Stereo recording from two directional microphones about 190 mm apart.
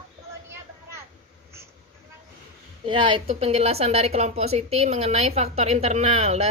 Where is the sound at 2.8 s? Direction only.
25° right (ahead or behind).